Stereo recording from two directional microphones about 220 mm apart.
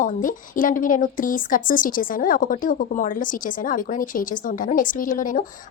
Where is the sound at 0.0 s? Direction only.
35° left (ahead or behind).